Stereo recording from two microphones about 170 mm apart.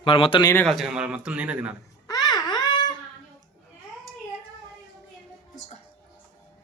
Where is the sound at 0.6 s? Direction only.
Centre (ahead or behind).